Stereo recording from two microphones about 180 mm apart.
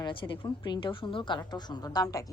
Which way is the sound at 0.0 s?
30° left (ahead or behind).